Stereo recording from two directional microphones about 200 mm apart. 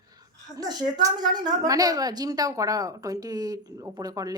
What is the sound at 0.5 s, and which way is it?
A woman's voice, 20° right (ahead or behind).